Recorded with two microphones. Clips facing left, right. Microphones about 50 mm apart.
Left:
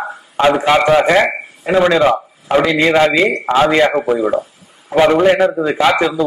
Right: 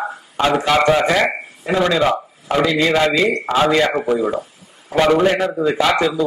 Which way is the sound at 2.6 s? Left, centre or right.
Left.